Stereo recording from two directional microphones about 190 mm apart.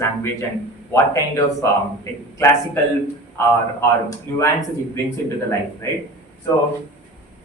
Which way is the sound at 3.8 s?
15° left (ahead or behind).